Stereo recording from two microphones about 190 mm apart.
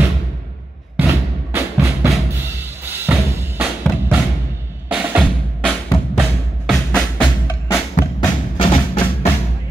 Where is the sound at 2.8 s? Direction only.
10° right (ahead or behind).